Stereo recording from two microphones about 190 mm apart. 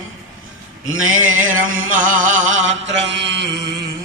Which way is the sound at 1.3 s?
45° right (ahead or behind).